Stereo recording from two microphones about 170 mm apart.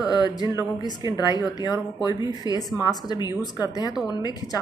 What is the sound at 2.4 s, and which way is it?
A woman's voice, 20° left (ahead or behind).